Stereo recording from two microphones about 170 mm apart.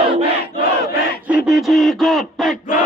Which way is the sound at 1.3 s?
Centre (ahead or behind).